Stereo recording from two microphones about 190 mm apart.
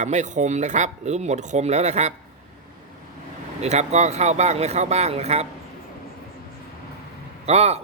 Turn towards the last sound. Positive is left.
turn(degrees=-35)  # may be behind; listen again after turning